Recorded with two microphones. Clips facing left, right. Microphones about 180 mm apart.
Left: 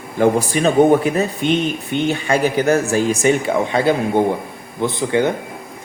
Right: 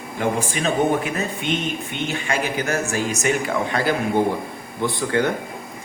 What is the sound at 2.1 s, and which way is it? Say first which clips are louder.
A man's voice: left 6 dB; 35° left (ahead or behind).